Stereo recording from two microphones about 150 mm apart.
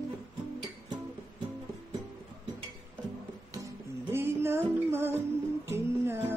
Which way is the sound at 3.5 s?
20° right (ahead or behind).